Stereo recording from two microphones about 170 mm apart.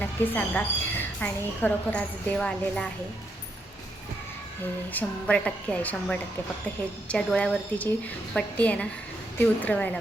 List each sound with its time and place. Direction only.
0.0 s a woman's voice: 10° left (ahead or behind)
4.9 s a woman's voice: 10° left (ahead or behind)